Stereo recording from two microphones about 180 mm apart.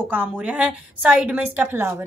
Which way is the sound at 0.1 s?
10° right (ahead or behind).